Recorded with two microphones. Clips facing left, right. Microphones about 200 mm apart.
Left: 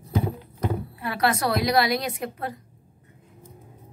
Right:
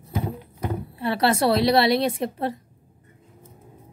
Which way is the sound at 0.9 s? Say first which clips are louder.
Right 5 dB; 30° right (ahead or behind).